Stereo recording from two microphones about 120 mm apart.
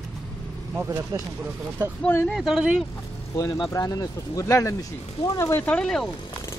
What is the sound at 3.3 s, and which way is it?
Speech, 30° left (ahead or behind).